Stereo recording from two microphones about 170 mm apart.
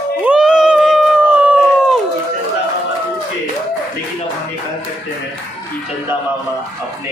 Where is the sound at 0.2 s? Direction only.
5° right (ahead or behind).